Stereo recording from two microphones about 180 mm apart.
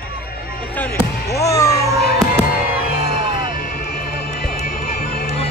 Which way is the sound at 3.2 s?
25° right (ahead or behind).